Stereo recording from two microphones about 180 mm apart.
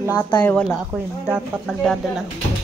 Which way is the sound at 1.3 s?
Centre (ahead or behind).